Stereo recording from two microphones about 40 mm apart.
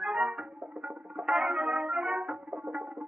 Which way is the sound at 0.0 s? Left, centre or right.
Right.